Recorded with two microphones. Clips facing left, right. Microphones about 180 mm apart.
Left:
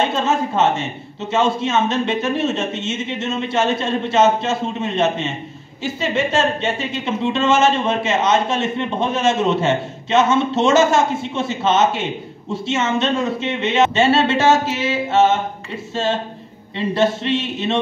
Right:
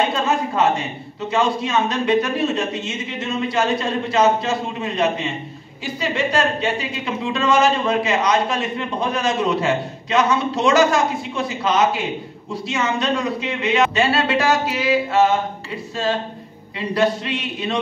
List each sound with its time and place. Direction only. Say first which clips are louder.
0.0 s speech: left 1 dB; 25° left (ahead or behind)
16.7 s speech: left 1 dB; 25° left (ahead or behind)